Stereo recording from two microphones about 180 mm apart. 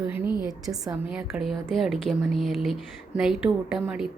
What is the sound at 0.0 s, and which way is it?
A woman's voice, 10° right (ahead or behind).